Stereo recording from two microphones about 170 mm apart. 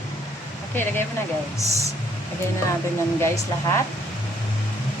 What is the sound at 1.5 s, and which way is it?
Speech, 20° left (ahead or behind).